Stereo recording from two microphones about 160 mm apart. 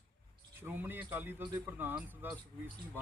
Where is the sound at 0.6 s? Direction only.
15° right (ahead or behind).